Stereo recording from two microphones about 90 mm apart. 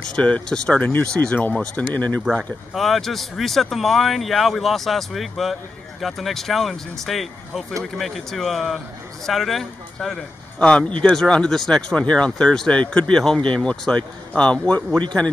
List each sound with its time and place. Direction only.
0.1 s speech: 10° left (ahead or behind)
2.2 s speech: centre (ahead or behind)